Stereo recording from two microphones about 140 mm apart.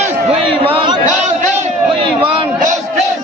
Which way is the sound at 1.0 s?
60° right (ahead or behind).